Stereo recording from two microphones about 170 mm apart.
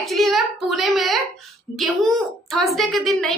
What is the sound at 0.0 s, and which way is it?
A child's voice, centre (ahead or behind).